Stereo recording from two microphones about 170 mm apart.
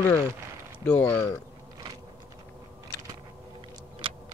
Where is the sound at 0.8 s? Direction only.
10° left (ahead or behind).